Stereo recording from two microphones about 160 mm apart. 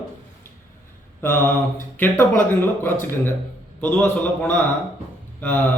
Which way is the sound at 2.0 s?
10° left (ahead or behind).